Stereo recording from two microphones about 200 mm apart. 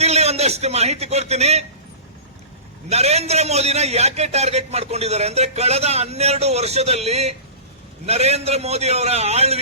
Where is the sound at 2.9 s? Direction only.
30° right (ahead or behind).